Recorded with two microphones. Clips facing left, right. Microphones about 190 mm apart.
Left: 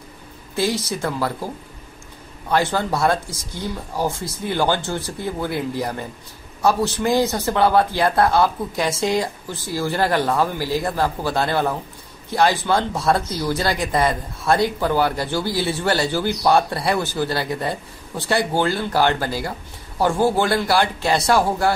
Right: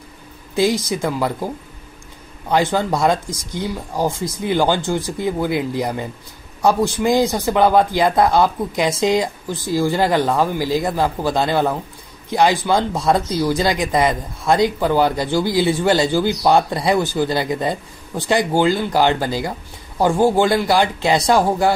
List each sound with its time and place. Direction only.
0.6 s speech: 15° right (ahead or behind)
2.5 s speech: 15° right (ahead or behind)